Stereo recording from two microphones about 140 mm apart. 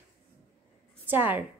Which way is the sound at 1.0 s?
15° right (ahead or behind).